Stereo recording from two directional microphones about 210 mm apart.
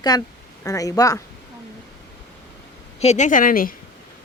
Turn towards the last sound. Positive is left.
turn(degrees=40)  # may be behind; listen again after turning